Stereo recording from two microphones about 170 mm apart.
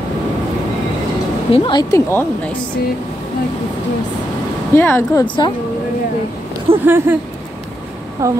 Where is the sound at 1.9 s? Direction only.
10° left (ahead or behind).